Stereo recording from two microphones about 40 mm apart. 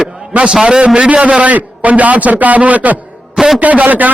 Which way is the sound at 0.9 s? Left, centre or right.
Right.